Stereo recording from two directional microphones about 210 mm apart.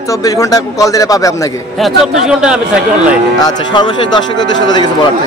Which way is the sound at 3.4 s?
20° left (ahead or behind).